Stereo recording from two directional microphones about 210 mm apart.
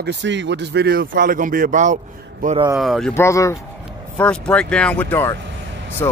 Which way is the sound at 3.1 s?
15° left (ahead or behind).